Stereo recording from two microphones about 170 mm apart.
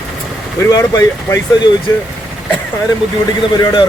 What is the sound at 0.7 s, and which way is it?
A man's voice, 20° left (ahead or behind).